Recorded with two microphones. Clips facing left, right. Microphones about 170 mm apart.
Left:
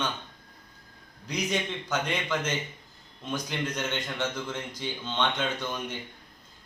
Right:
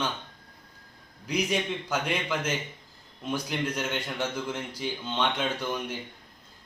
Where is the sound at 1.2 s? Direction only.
10° right (ahead or behind).